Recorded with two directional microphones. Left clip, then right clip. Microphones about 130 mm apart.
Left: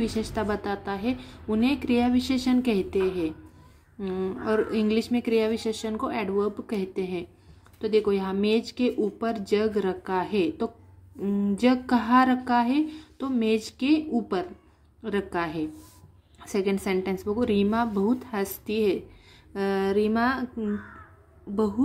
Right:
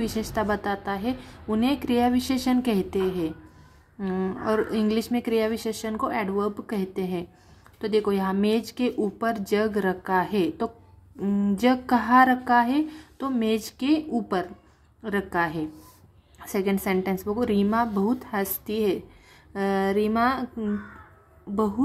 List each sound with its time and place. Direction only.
0.0 s a woman's voice: 20° right (ahead or behind)